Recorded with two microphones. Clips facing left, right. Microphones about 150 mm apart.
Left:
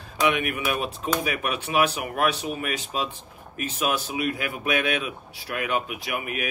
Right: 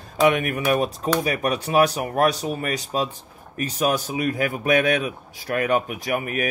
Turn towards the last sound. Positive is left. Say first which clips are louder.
# right 5 dB
turn(degrees=-45)  # may be behind; listen again after turning